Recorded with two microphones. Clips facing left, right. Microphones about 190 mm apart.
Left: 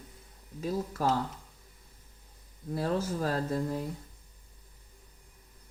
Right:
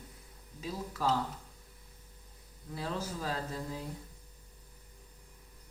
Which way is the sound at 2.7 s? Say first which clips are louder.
Left 7 dB; 50° left (ahead or behind).